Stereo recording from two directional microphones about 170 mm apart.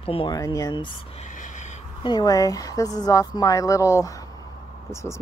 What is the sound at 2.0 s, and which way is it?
Speech, 25° left (ahead or behind).